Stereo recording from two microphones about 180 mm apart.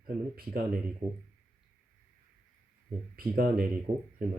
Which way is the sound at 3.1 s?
55° right (ahead or behind).